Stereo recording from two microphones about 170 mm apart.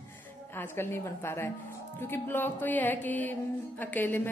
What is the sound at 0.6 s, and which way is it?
Music, 15° left (ahead or behind).